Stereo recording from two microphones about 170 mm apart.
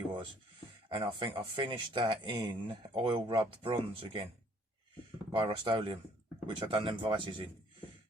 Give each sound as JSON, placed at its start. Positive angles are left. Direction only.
{"t": 0.9, "sound": "speech", "side_deg": -30}
{"t": 5.3, "sound": "speech", "side_deg": -30}